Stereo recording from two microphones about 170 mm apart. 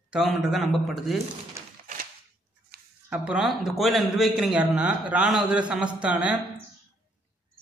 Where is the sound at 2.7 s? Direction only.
60° right (ahead or behind).